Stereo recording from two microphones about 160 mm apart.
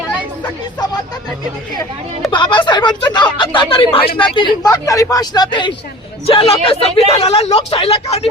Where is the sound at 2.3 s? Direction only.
30° left (ahead or behind).